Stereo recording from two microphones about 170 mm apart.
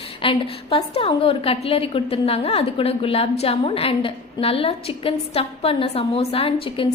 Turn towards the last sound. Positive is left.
turn(degrees=35)  # may be behind; listen again after turning